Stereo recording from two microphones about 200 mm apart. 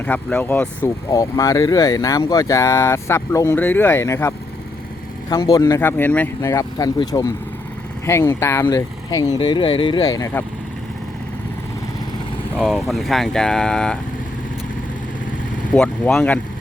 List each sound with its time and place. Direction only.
0.0 s speech: 5° left (ahead or behind)
12.9 s speech: centre (ahead or behind)
15.7 s speech: 5° left (ahead or behind)